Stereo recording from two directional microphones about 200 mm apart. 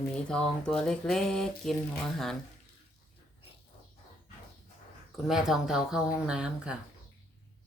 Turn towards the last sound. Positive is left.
turn(degrees=-5)  # may be behind; listen again after turning